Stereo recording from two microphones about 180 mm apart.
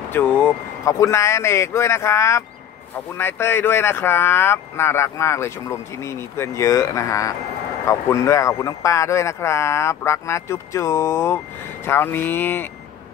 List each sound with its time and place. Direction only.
0.1 s speech: 10° left (ahead or behind)